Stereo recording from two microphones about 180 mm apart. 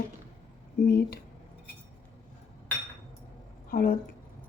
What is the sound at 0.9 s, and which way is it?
Speech, 60° left (ahead or behind).